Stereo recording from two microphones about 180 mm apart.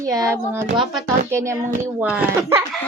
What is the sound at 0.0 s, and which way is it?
Speech, 20° right (ahead or behind).